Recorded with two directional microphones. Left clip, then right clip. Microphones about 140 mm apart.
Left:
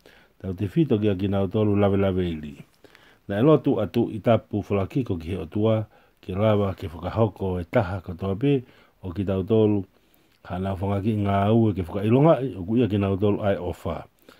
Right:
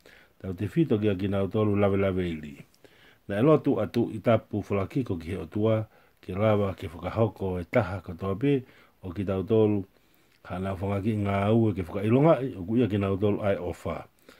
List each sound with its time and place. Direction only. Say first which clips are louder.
0.4 s speech: left 3 dB; 35° left (ahead or behind)